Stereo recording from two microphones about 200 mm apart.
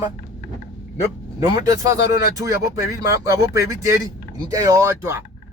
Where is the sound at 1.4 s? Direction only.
20° right (ahead or behind).